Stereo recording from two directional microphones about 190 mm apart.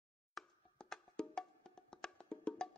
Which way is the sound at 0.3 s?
Centre (ahead or behind).